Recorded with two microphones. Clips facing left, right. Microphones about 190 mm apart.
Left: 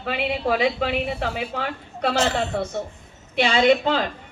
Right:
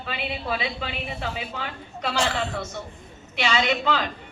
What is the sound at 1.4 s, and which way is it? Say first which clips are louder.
A woman's voice: left 5 dB; 50° left (ahead or behind).